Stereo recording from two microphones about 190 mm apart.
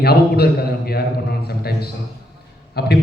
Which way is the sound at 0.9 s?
55° left (ahead or behind).